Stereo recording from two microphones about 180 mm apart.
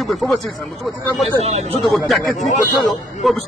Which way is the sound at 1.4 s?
35° right (ahead or behind).